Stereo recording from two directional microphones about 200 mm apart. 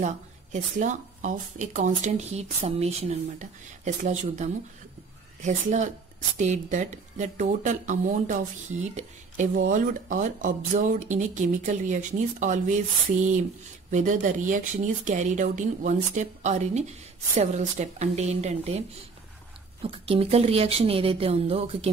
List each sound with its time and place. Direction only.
0.0 s speech: 40° right (ahead or behind)